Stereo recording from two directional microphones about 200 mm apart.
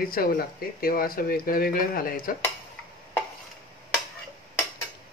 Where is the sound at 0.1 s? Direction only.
45° left (ahead or behind).